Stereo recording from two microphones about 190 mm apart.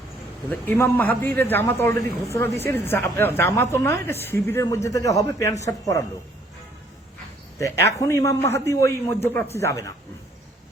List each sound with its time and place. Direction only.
0.6 s a woman's voice: 10° left (ahead or behind)
7.6 s a woman's voice: 15° left (ahead or behind)